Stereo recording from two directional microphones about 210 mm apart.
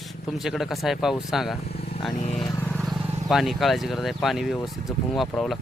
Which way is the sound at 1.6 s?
50° left (ahead or behind).